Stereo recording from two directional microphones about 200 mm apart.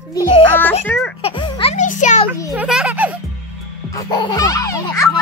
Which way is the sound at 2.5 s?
5° right (ahead or behind).